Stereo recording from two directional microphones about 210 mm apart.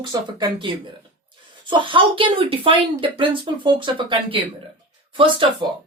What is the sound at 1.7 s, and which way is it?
Speech, 25° right (ahead or behind).